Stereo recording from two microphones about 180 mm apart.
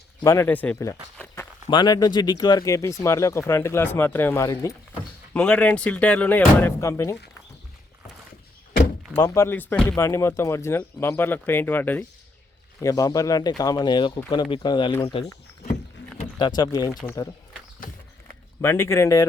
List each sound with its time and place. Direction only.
0.2 s speech: 15° left (ahead or behind)
9.2 s speech: 15° left (ahead or behind)
16.4 s speech: 25° left (ahead or behind)
18.6 s speech: 15° left (ahead or behind)